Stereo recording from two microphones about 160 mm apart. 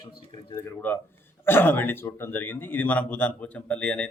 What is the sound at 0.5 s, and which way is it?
A man's voice, 10° left (ahead or behind).